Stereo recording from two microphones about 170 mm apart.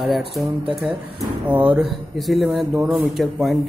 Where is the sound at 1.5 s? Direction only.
10° right (ahead or behind).